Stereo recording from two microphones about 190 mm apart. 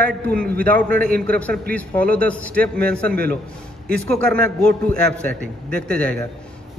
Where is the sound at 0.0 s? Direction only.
5° left (ahead or behind).